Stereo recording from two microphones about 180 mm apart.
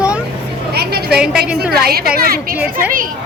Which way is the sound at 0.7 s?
60° right (ahead or behind).